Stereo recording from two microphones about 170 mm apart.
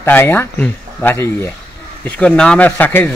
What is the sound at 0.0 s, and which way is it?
A man's voice, 10° left (ahead or behind).